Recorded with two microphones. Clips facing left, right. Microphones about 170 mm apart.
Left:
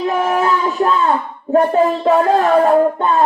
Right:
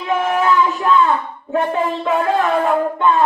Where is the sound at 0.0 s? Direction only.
40° left (ahead or behind).